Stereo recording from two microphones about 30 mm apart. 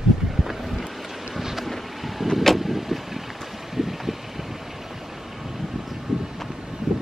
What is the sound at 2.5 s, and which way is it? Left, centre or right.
Vehicle, centre.